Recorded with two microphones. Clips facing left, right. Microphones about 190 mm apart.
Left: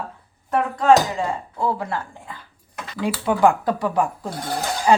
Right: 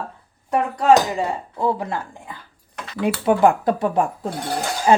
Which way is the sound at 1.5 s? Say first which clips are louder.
Right 3 dB; 20° right (ahead or behind).